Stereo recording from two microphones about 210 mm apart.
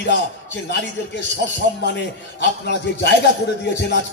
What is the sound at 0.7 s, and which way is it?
A man's voice, 55° left (ahead or behind).